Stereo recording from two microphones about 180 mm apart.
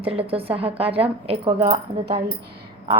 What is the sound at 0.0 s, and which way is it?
Speech, 30° right (ahead or behind).